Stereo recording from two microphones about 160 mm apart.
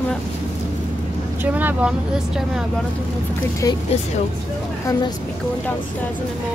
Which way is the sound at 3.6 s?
20° left (ahead or behind).